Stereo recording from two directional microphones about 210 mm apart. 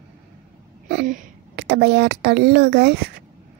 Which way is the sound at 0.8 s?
45° right (ahead or behind).